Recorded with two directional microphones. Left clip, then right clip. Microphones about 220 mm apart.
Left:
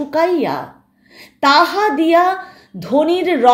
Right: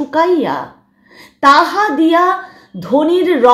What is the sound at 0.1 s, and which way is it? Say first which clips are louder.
A woman's voice: right 2 dB; 15° left (ahead or behind).